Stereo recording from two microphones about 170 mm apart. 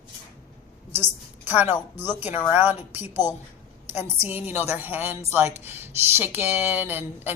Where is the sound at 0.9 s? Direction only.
35° right (ahead or behind).